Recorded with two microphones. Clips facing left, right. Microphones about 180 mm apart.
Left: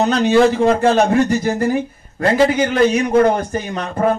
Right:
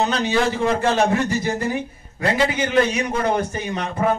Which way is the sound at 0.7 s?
60° left (ahead or behind).